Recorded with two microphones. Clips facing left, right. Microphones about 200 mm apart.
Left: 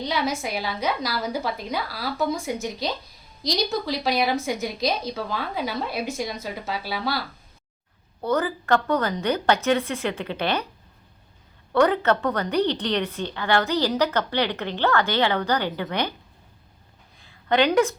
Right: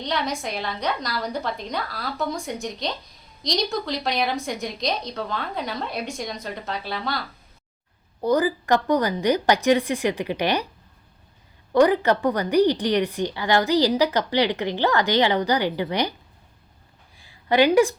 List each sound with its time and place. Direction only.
0.0 s a woman's voice: 5° left (ahead or behind)
8.2 s a woman's voice: 15° right (ahead or behind)
11.7 s a woman's voice: 10° right (ahead or behind)
17.2 s a sound: 10° right (ahead or behind)